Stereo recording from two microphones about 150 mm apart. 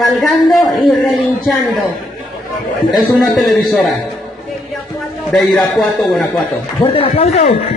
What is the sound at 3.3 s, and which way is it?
Speech, centre (ahead or behind).